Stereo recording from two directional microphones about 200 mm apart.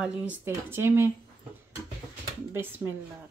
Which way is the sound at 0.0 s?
5° right (ahead or behind).